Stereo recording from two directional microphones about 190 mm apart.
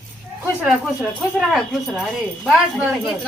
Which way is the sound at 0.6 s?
5° right (ahead or behind).